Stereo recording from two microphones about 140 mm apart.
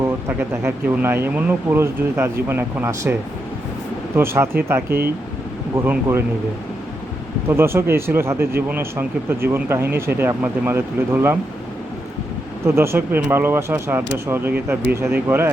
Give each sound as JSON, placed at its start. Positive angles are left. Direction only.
{"t": 0.0, "sound": "speech", "side_deg": -20}
{"t": 7.5, "sound": "speech", "side_deg": -15}
{"t": 12.6, "sound": "speech", "side_deg": -20}